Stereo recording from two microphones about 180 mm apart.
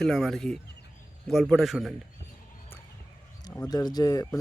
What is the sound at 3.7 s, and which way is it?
Speech, 20° left (ahead or behind).